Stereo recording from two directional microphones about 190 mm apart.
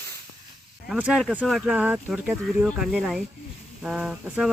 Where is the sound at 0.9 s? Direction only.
5° right (ahead or behind).